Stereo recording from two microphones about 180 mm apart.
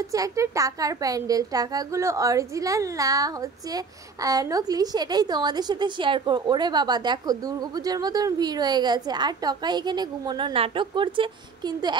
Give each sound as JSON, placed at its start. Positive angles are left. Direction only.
{"t": 0.1, "sound": "a woman's voice", "side_deg": -20}